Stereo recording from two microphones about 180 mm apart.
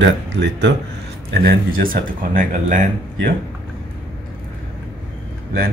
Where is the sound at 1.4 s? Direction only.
50° right (ahead or behind).